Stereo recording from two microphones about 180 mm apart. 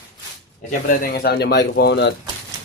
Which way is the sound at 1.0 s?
60° left (ahead or behind).